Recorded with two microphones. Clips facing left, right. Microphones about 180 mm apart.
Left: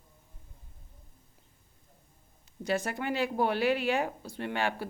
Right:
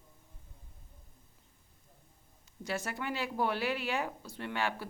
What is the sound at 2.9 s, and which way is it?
Speech, 55° left (ahead or behind).